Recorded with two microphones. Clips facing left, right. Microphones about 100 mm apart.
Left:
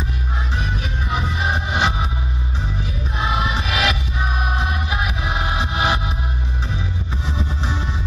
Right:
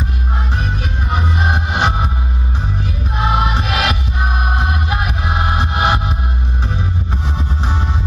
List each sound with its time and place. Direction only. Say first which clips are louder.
1.5 s music: right 2 dB; 50° right (ahead or behind)
3.2 s music: right 5 dB; 50° right (ahead or behind)
5.6 s music: right 4 dB; 45° right (ahead or behind)